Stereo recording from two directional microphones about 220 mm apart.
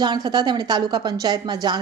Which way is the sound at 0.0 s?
20° right (ahead or behind).